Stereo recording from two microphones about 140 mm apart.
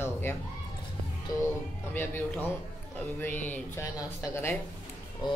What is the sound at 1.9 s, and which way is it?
A man's voice, 15° left (ahead or behind).